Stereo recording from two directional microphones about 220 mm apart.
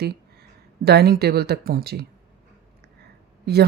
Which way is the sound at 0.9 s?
45° right (ahead or behind).